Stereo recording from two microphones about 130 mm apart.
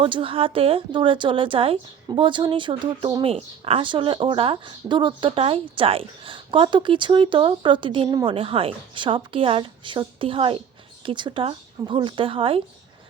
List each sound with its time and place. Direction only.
0.0 s a woman's voice: 45° right (ahead or behind)
3.3 s a woman's voice: 50° right (ahead or behind)